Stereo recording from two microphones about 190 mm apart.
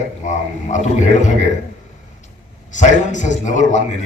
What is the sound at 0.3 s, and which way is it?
A man's voice, 40° left (ahead or behind).